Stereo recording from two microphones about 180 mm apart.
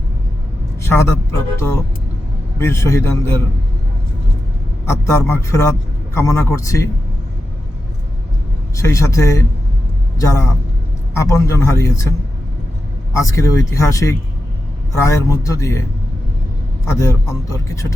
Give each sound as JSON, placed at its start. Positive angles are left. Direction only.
{"t": 0.8, "sound": "a sound", "side_deg": 15}
{"t": 1.5, "sound": "speech", "side_deg": 15}
{"t": 4.9, "sound": "speech", "side_deg": 15}
{"t": 8.7, "sound": "speech", "side_deg": 15}
{"t": 13.1, "sound": "speech", "side_deg": 15}
{"t": 16.8, "sound": "speech", "side_deg": 15}